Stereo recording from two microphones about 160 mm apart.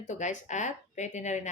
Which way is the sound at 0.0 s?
50° left (ahead or behind).